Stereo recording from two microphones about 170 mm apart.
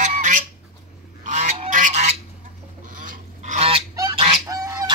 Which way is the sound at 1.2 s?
45° right (ahead or behind).